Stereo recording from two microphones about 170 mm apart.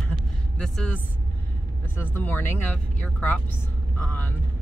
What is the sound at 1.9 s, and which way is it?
Speech, 10° left (ahead or behind).